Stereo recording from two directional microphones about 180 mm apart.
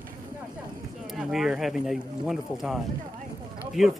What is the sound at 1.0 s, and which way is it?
Speech, 5° right (ahead or behind).